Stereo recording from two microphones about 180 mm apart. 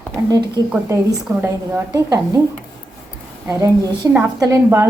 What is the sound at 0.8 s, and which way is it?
A woman's voice, 10° right (ahead or behind).